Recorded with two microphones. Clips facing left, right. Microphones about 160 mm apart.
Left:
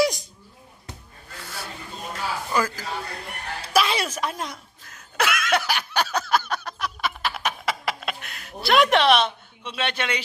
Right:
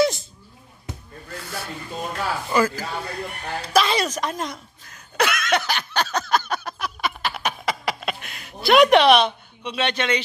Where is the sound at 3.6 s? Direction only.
5° left (ahead or behind).